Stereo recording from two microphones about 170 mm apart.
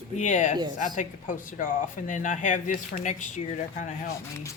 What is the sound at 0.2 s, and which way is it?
Speech, 45° left (ahead or behind).